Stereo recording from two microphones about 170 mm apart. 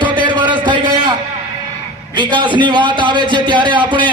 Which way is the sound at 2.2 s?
30° right (ahead or behind).